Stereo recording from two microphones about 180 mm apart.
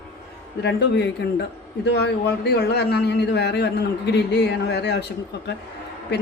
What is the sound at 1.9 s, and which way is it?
A woman's voice, 65° left (ahead or behind).